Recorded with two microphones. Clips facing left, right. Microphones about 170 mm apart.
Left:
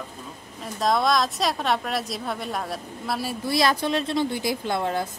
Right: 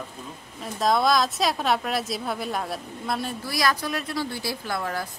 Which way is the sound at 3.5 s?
25° left (ahead or behind).